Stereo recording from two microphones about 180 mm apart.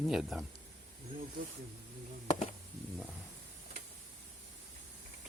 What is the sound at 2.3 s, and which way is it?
Insect, 40° left (ahead or behind).